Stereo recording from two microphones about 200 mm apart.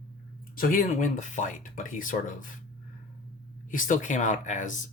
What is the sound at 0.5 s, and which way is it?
Speech, 45° left (ahead or behind).